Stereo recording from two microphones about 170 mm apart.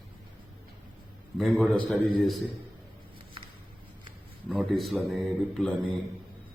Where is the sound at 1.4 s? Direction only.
Centre (ahead or behind).